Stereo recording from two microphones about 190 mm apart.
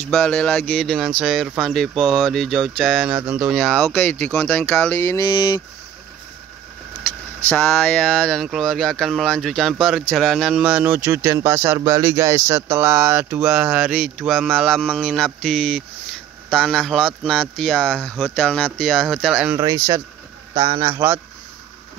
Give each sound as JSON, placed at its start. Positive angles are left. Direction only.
{"t": 0.0, "sound": "speech", "side_deg": 5}
{"t": 7.0, "sound": "speech", "side_deg": 10}
{"t": 19.5, "sound": "speech", "side_deg": -15}